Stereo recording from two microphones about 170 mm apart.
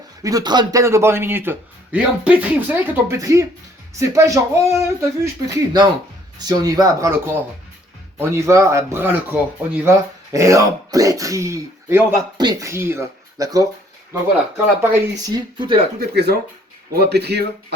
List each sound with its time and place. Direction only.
0.2 s a man's voice: 20° right (ahead or behind)
8.2 s a man's voice: 15° right (ahead or behind)
15.5 s speech: 25° right (ahead or behind)
16.0 s speech: 75° right (ahead or behind)